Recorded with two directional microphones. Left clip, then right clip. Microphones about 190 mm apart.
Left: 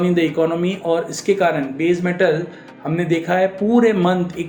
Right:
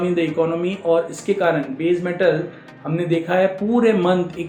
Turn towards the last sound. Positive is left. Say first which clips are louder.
# even
turn(degrees=40)  # may be behind; listen again after turning